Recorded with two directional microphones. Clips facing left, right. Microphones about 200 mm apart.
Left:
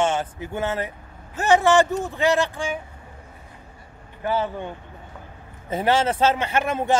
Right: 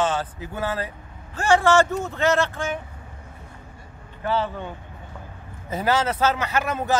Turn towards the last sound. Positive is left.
turn(degrees=25)  # may be behind; listen again after turning